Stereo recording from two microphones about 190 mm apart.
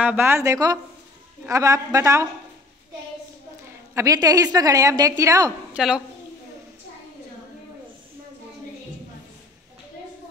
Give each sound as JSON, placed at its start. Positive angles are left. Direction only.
{"t": 0.0, "sound": "a woman's voice", "side_deg": -10}
{"t": 3.9, "sound": "a woman's voice", "side_deg": -20}
{"t": 5.8, "sound": "a woman's voice", "side_deg": -5}